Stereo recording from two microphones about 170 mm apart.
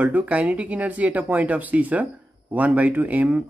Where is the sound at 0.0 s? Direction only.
10° right (ahead or behind).